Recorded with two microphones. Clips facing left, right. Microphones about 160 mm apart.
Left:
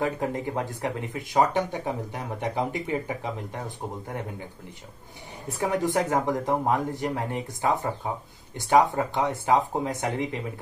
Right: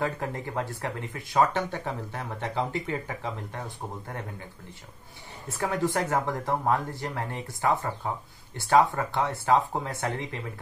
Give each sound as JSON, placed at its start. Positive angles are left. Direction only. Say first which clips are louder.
{"t": 0.0, "sound": "speech", "louder": "left 3 dB", "side_deg": 20}
{"t": 5.6, "sound": "speech", "louder": "left 2 dB", "side_deg": 15}